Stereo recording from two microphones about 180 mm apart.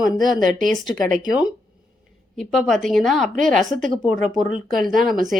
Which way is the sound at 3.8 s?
45° right (ahead or behind).